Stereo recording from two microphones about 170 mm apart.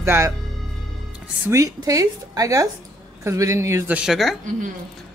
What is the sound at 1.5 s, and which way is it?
A woman's voice, 20° right (ahead or behind).